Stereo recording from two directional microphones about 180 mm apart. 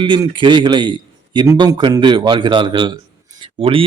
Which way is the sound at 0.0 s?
25° right (ahead or behind).